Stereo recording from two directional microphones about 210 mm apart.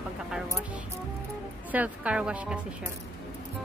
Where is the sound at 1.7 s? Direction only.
5° right (ahead or behind).